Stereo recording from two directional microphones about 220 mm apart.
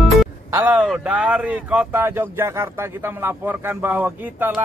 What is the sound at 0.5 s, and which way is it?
A man's voice, 10° right (ahead or behind).